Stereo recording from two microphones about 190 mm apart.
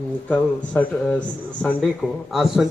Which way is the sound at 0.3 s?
5° left (ahead or behind).